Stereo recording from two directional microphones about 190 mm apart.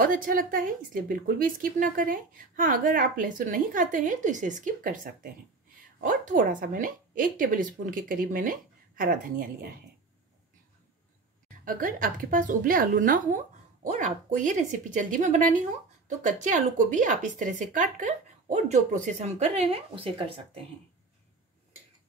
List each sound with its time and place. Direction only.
0.0 s a woman's voice: 45° right (ahead or behind)
11.4 s a woman's voice: 45° right (ahead or behind); by 20.6 s 30° right (ahead or behind)